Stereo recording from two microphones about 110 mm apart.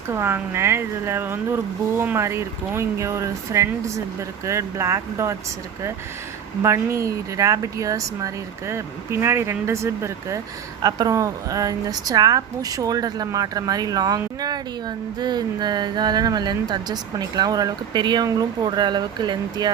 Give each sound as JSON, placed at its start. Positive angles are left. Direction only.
{"t": 0.1, "sound": "speech", "side_deg": -20}
{"t": 6.6, "sound": "speech", "side_deg": -25}